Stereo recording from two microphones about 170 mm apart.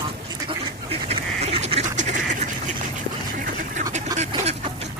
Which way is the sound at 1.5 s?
35° right (ahead or behind).